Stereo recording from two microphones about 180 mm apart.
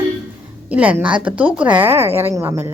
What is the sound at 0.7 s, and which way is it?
A woman's voice, 10° right (ahead or behind).